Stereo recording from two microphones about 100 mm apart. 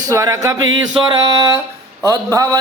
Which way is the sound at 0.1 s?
35° right (ahead or behind).